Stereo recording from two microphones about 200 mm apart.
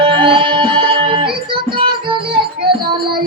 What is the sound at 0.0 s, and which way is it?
Music, 25° right (ahead or behind).